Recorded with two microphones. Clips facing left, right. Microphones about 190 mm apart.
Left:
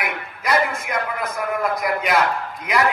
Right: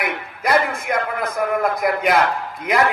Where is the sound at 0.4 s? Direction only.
55° right (ahead or behind).